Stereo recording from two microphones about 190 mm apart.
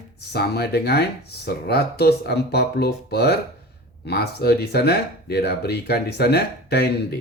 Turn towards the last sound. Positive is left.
turn(degrees=55)  # may be behind; listen again after turning